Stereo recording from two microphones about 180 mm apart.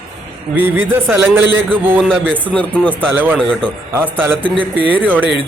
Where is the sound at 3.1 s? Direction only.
10° right (ahead or behind).